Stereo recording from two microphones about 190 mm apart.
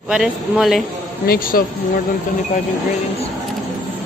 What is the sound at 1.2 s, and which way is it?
Speech, 50° left (ahead or behind).